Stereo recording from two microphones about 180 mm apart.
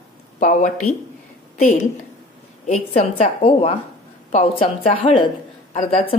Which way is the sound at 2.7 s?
35° left (ahead or behind).